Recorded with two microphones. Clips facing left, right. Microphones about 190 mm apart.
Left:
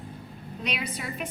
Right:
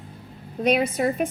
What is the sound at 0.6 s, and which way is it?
Speech, 50° right (ahead or behind).